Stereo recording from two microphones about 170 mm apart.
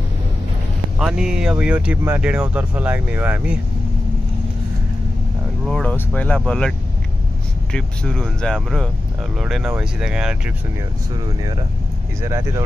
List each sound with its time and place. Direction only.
0.9 s speech: 5° right (ahead or behind)
5.7 s speech: 5° left (ahead or behind)
7.7 s speech: 5° left (ahead or behind)
12.2 s speech: 15° right (ahead or behind)